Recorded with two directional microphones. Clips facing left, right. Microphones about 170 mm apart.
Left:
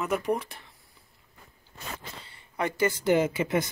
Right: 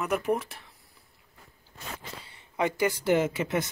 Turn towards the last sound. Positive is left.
turn(degrees=0)  # may be behind; listen again after turning